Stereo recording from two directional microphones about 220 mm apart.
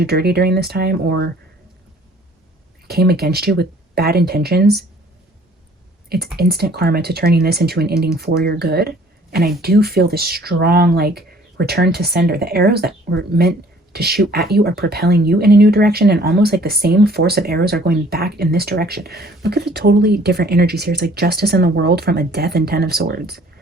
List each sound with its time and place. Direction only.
0.0 s speech: 45° right (ahead or behind)
2.8 s speech: 45° right (ahead or behind)
6.3 s speech: 45° right (ahead or behind)